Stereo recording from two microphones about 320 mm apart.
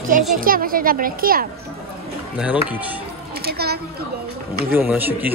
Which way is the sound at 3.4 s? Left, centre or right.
Right.